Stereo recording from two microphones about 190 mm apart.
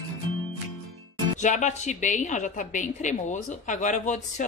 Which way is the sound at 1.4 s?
40° left (ahead or behind).